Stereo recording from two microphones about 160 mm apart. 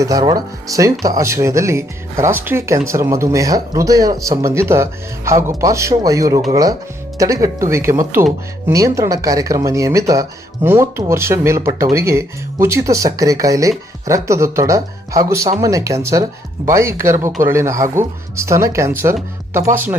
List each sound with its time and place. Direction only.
0.0 s speech: 20° right (ahead or behind)